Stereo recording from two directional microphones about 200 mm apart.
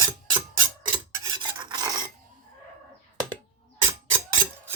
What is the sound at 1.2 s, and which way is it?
Filing, 20° right (ahead or behind).